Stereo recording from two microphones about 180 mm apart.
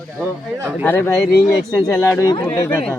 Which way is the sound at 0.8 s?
10° left (ahead or behind).